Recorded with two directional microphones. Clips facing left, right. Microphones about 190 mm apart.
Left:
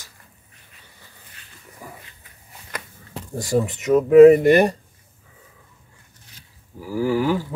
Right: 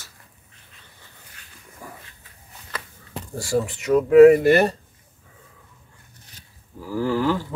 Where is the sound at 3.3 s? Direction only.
20° left (ahead or behind).